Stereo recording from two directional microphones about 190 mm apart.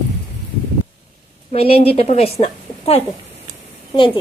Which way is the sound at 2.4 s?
30° left (ahead or behind).